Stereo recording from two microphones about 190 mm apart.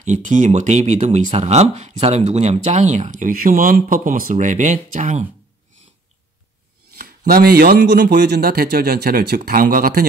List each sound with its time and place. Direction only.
0.0 s speech: 40° right (ahead or behind)
7.0 s speech: 50° right (ahead or behind)